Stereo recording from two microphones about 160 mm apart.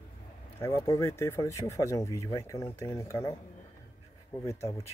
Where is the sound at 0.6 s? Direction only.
20° left (ahead or behind).